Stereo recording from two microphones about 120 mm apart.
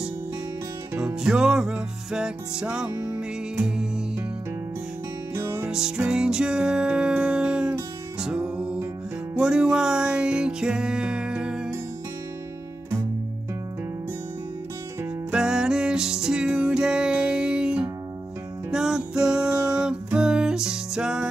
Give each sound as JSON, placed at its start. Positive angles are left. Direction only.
{"t": 0.9, "sound": "music", "side_deg": -5}
{"t": 5.3, "sound": "music", "side_deg": -25}
{"t": 5.7, "sound": "music", "side_deg": -5}
{"t": 15.3, "sound": "music", "side_deg": -5}